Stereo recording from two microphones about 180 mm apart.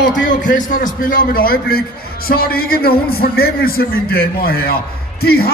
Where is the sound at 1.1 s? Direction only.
55° left (ahead or behind).